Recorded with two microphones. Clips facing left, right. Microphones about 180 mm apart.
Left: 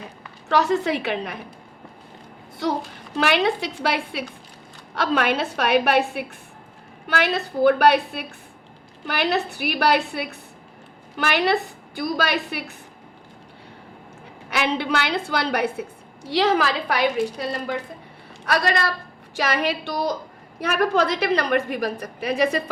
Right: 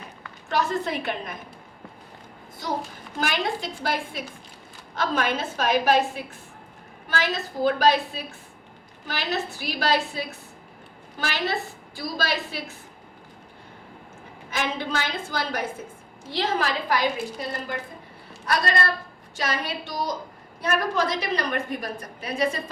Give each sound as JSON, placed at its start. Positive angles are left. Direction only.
{"t": 0.4, "sound": "a woman's voice", "side_deg": 75}
{"t": 3.2, "sound": "a woman's voice", "side_deg": 70}
{"t": 7.1, "sound": "a woman's voice", "side_deg": 65}
{"t": 11.3, "sound": "a woman's voice", "side_deg": 65}
{"t": 14.5, "sound": "a woman's voice", "side_deg": 70}
{"t": 18.4, "sound": "a woman's voice", "side_deg": 70}